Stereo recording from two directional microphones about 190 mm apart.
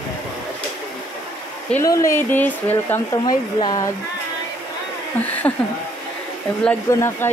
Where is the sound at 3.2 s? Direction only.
20° left (ahead or behind).